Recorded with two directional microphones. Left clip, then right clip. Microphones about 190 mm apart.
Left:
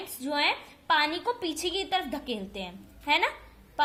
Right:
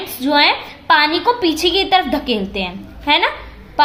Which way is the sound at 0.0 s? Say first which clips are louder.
Right 14 dB; 15° left (ahead or behind).